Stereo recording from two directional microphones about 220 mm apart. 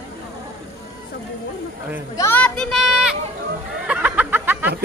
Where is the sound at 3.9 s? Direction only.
5° right (ahead or behind).